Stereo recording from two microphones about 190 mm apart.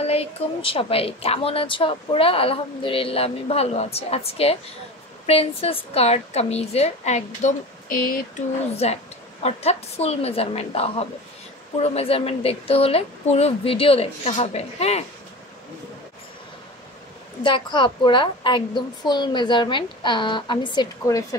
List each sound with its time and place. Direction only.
0.0 s a woman's voice: 30° left (ahead or behind); by 8.5 s 50° left (ahead or behind)
8.7 s a woman's voice: 35° left (ahead or behind)
17.4 s a woman's voice: 25° left (ahead or behind)